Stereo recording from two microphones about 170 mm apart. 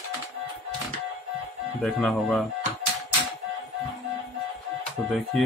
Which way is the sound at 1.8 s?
Centre (ahead or behind).